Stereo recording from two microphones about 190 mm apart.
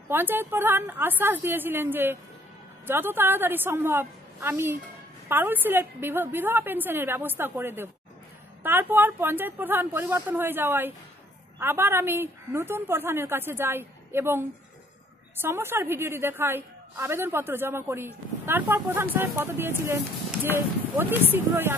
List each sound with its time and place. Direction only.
0.1 s a woman's voice: 10° right (ahead or behind)
15.4 s a woman's voice: 10° right (ahead or behind)